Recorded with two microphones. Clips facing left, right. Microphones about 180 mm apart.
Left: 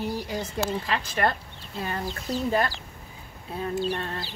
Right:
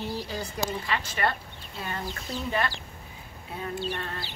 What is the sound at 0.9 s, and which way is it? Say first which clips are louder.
A woman's voice: left 2 dB; 40° left (ahead or behind).